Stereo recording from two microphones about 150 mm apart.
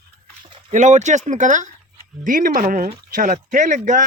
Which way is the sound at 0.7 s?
55° right (ahead or behind).